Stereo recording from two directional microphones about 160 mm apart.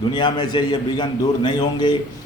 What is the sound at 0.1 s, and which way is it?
A man's voice, 25° left (ahead or behind).